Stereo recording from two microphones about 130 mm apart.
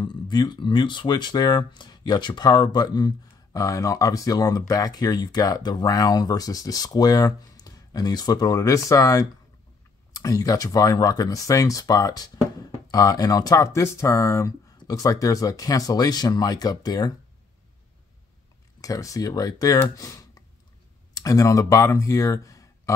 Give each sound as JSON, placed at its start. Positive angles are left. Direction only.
{"t": 0.0, "sound": "speech", "side_deg": 35}
{"t": 18.8, "sound": "speech", "side_deg": 25}